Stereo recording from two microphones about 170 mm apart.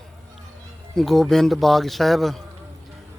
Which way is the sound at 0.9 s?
Centre (ahead or behind).